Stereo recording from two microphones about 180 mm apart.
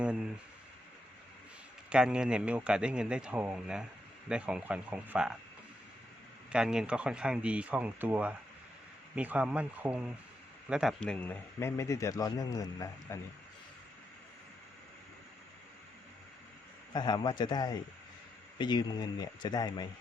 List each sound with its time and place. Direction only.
1.9 s speech: 5° right (ahead or behind)
6.5 s speech: 5° right (ahead or behind); by 13.1 s 20° left (ahead or behind)
16.9 s speech: 25° left (ahead or behind)